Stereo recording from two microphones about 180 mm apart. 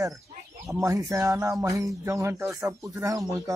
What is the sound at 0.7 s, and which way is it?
Speech, 20° right (ahead or behind).